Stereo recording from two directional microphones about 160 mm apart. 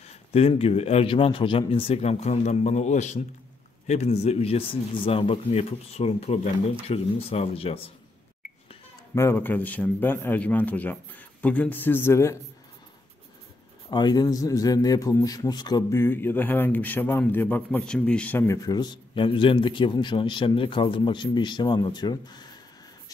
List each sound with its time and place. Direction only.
0.0 s speech: 40° left (ahead or behind)
9.1 s a man's voice: 15° left (ahead or behind)
13.8 s a man's voice: 25° left (ahead or behind); by 18.6 s 10° left (ahead or behind)
18.7 s a man's voice: 30° left (ahead or behind)